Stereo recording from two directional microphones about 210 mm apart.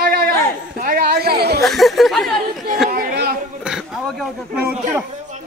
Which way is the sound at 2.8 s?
45° right (ahead or behind).